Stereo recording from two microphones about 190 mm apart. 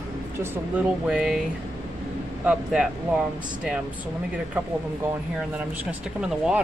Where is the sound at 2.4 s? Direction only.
5° right (ahead or behind).